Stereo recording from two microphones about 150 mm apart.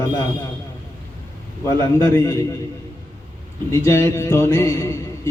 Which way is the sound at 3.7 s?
15° left (ahead or behind).